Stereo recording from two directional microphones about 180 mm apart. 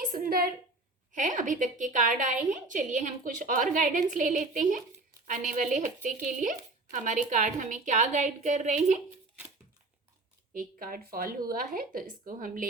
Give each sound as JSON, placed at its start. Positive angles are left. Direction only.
{"t": 0.0, "sound": "a sound", "side_deg": -50}
{"t": 1.1, "sound": "speech", "side_deg": -45}
{"t": 10.5, "sound": "speech", "side_deg": -50}